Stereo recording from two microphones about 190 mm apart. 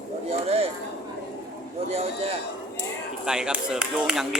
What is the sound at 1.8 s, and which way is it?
Speech, 30° right (ahead or behind).